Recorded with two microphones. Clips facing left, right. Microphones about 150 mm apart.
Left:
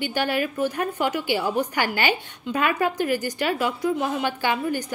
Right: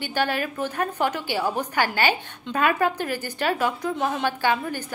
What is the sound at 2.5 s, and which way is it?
Speech, 45° right (ahead or behind).